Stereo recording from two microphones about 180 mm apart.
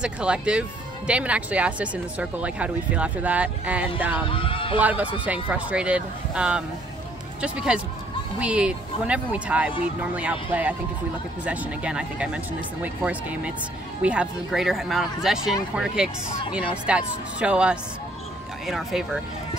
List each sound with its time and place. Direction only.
0.0 s speech: 5° right (ahead or behind)
4.3 s speech: 30° left (ahead or behind)
4.7 s speech: 10° right (ahead or behind)
11.4 s speech: 10° right (ahead or behind)